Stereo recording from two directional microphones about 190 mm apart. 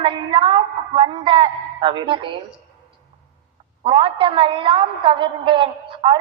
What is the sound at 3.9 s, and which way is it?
A woman's voice, 25° right (ahead or behind).